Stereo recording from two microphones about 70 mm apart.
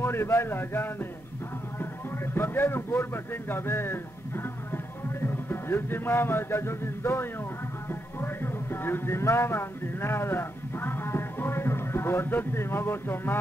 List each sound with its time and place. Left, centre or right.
0.0 s a man's voice: left
2.3 s a man's voice: left
5.2 s music: left
7.9 s a sound: left